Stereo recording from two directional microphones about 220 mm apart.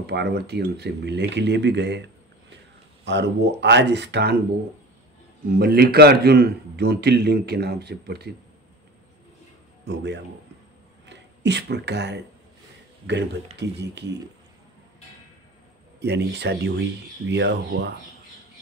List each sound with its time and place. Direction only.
0.0 s a man's voice: 50° right (ahead or behind)
3.1 s a man's voice: 55° right (ahead or behind)
5.6 s a man's voice: 45° right (ahead or behind)
9.8 s a man's voice: 50° right (ahead or behind)
16.0 s a man's voice: 50° right (ahead or behind)